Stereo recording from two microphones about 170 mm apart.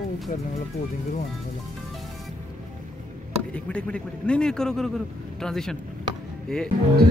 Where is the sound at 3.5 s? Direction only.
5° left (ahead or behind).